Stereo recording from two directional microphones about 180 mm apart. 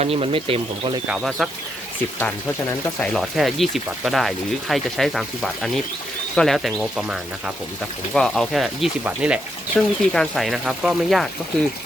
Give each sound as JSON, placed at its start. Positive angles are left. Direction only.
{"t": 0.0, "sound": "speech", "side_deg": -35}
{"t": 1.0, "sound": "speech", "side_deg": -5}
{"t": 2.1, "sound": "speech", "side_deg": 15}
{"t": 3.1, "sound": "speech", "side_deg": 0}